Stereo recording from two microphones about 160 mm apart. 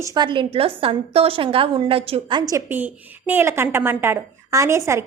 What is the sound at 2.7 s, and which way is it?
A woman's voice, 10° right (ahead or behind).